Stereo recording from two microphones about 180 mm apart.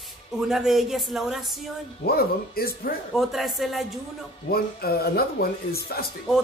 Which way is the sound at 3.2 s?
Centre (ahead or behind).